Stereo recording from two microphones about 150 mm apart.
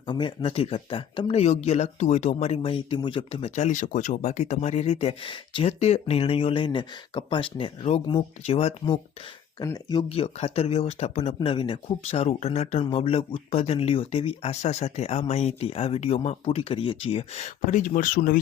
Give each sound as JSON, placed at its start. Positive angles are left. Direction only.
{"t": 0.1, "sound": "speech", "side_deg": 35}
{"t": 3.5, "sound": "speech", "side_deg": 55}
{"t": 10.1, "sound": "speech", "side_deg": 40}